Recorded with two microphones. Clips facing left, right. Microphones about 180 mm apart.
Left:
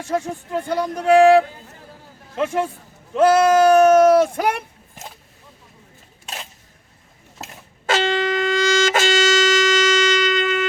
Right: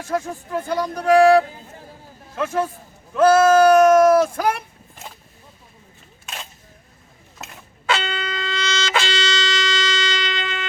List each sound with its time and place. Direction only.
0.0 s speech: 25° left (ahead or behind)
7.9 s music: 45° left (ahead or behind)